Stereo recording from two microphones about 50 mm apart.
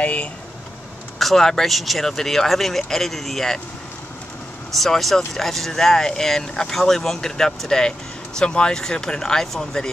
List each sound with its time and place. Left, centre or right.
0.0 s vehicle: left
1.2 s speech: centre
4.7 s speech: centre